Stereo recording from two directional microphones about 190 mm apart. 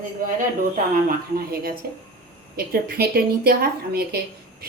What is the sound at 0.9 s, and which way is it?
A woman's voice, 50° right (ahead or behind).